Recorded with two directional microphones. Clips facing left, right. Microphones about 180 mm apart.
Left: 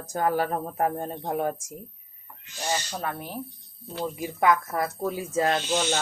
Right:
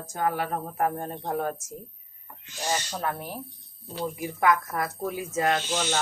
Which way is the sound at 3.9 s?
25° left (ahead or behind).